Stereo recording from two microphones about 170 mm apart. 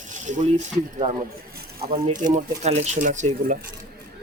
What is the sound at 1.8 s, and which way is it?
Speech, 45° right (ahead or behind).